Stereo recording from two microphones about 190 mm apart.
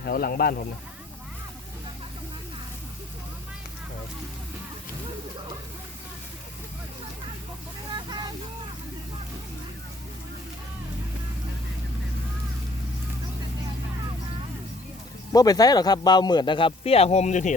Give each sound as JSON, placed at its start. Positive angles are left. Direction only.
{"t": 0.0, "sound": "speech", "side_deg": 55}
{"t": 7.9, "sound": "a sound", "side_deg": -20}
{"t": 15.3, "sound": "speech", "side_deg": 20}